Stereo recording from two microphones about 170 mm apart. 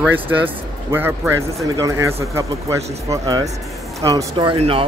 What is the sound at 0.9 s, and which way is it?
Speech, 15° right (ahead or behind).